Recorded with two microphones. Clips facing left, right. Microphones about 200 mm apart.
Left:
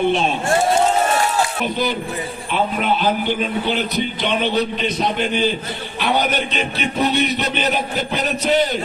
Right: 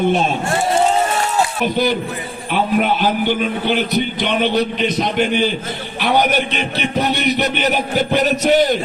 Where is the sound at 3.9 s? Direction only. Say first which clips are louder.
Right 3 dB; 60° right (ahead or behind).